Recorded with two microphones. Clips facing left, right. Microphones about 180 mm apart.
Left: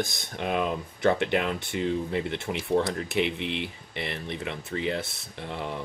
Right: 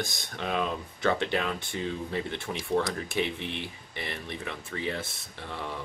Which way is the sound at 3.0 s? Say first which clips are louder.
Left 3 dB; 65° left (ahead or behind).